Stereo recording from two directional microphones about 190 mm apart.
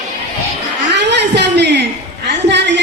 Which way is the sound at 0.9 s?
65° right (ahead or behind).